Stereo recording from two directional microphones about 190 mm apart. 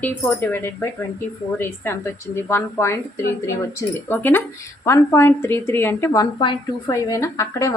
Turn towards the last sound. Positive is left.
turn(degrees=15)  # may be behind; listen again after turning